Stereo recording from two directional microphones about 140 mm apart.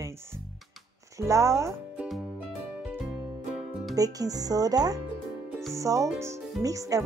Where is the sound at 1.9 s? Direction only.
Centre (ahead or behind).